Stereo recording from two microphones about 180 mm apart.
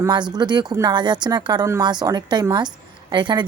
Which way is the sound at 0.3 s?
25° right (ahead or behind).